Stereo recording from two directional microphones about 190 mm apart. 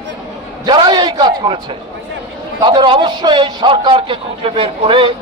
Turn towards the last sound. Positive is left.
turn(degrees=-30)  # may be behind; listen again after turning